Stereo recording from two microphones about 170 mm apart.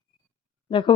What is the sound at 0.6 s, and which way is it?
Speech, 30° left (ahead or behind).